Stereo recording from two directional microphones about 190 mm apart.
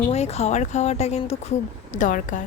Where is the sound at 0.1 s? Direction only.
35° left (ahead or behind).